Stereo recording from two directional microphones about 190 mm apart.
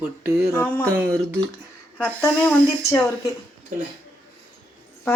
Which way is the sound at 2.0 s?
5° left (ahead or behind).